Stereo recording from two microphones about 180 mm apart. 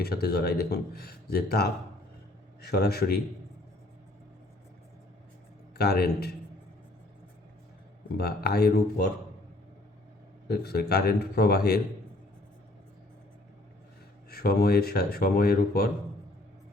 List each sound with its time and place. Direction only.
0.0 s speech: 60° left (ahead or behind)
2.6 s speech: 60° left (ahead or behind)
5.7 s speech: 60° left (ahead or behind)
8.2 s speech: 60° left (ahead or behind)
10.5 s speech: 60° left (ahead or behind)
14.3 s speech: 60° left (ahead or behind)